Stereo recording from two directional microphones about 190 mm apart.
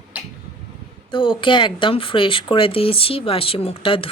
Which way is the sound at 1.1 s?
25° left (ahead or behind).